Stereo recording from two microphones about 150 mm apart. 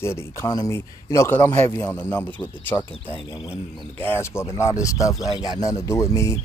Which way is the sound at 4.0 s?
15° left (ahead or behind).